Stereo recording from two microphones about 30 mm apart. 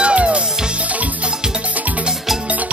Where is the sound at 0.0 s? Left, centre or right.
Right.